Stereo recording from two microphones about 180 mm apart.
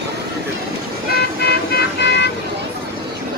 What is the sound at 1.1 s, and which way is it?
Vehicle, 60° left (ahead or behind).